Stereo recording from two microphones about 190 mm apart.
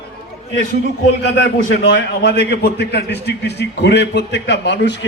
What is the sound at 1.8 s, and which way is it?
A man's voice, 70° left (ahead or behind).